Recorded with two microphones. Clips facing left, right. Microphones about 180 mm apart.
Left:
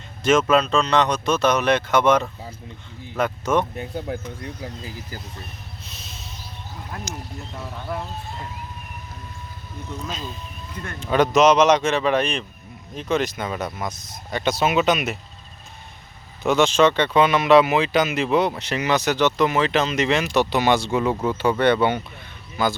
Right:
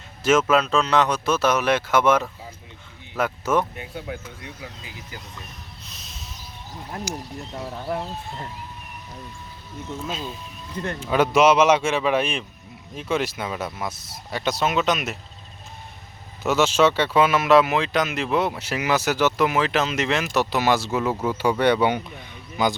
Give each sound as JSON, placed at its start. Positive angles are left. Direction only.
{"t": 0.2, "sound": "speech", "side_deg": -5}
{"t": 3.8, "sound": "speech", "side_deg": 40}
{"t": 5.8, "sound": "music", "side_deg": 0}
{"t": 10.0, "sound": "speech", "side_deg": -5}
{"t": 16.4, "sound": "speech", "side_deg": -5}